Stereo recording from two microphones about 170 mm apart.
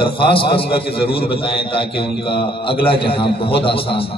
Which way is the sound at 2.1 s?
70° left (ahead or behind).